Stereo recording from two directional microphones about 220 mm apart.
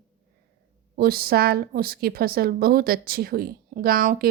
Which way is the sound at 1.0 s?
45° right (ahead or behind).